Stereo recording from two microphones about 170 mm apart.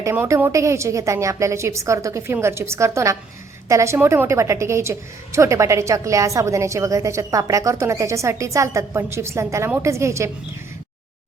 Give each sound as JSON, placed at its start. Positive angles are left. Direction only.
{"t": 0.0, "sound": "a woman's voice", "side_deg": -15}